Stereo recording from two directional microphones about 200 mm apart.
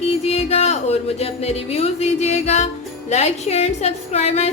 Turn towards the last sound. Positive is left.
turn(degrees=30)  # may be behind; listen again after turning